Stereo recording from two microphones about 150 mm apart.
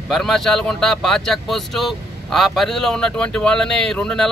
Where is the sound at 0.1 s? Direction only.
Centre (ahead or behind).